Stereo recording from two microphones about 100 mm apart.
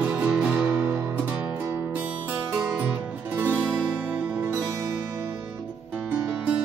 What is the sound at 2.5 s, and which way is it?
Music, 5° right (ahead or behind).